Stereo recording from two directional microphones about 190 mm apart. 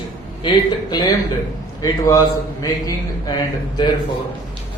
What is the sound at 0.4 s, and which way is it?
A man's voice, 20° left (ahead or behind).